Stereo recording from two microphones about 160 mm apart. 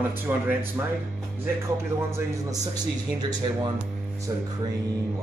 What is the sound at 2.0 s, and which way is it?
Speech, 15° right (ahead or behind).